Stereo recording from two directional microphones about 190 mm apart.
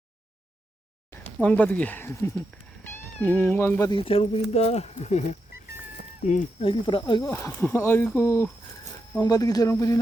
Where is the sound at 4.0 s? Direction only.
30° left (ahead or behind).